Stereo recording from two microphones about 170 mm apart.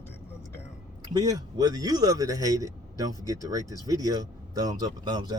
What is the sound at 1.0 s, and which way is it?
A man's voice, 20° right (ahead or behind).